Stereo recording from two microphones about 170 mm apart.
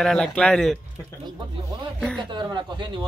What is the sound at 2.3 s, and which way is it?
Speech, 25° right (ahead or behind).